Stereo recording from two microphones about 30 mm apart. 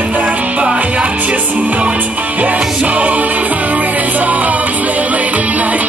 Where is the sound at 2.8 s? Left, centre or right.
Right.